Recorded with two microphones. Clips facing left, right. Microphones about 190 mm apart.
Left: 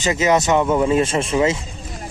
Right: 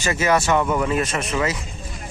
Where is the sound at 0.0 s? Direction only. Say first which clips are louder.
Left 3 dB; 20° left (ahead or behind).